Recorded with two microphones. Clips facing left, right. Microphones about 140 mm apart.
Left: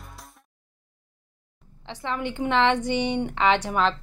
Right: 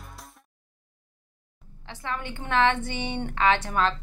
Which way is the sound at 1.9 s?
20° left (ahead or behind).